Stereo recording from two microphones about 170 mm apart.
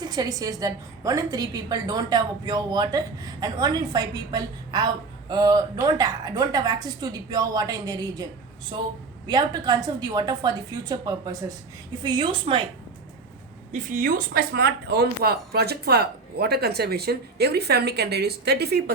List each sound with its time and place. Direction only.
0.0 s a woman's voice: 20° right (ahead or behind)
13.7 s speech: 55° right (ahead or behind); by 18.9 s 70° right (ahead or behind)